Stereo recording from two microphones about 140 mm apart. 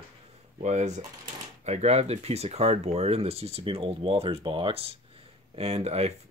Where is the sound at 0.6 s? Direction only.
55° right (ahead or behind).